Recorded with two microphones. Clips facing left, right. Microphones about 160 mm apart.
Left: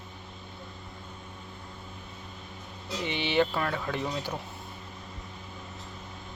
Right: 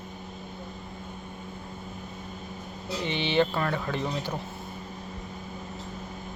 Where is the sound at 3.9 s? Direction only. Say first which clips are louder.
Right 2 dB; 15° left (ahead or behind).